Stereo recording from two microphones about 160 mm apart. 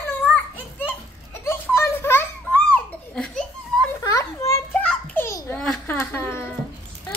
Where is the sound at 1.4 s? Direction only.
15° left (ahead or behind).